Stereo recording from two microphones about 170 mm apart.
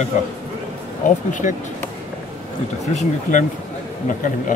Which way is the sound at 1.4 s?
45° left (ahead or behind).